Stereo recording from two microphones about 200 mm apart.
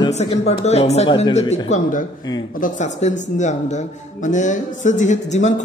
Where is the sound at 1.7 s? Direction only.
40° left (ahead or behind).